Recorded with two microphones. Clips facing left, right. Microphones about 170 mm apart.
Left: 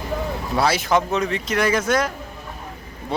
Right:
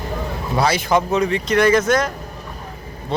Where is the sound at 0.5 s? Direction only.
Centre (ahead or behind).